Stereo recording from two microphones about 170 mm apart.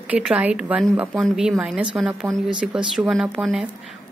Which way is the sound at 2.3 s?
20° right (ahead or behind).